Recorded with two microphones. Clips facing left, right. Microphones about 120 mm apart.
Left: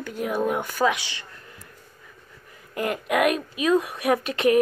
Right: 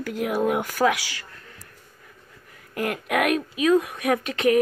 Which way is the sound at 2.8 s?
Centre (ahead or behind).